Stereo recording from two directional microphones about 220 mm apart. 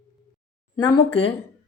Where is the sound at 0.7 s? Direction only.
20° left (ahead or behind).